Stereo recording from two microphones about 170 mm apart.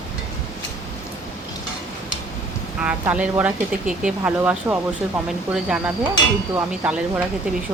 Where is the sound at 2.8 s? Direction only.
10° right (ahead or behind).